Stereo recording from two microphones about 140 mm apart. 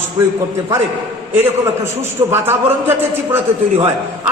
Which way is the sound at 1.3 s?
15° right (ahead or behind).